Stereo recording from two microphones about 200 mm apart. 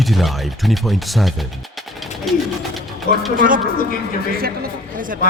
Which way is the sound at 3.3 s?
45° right (ahead or behind).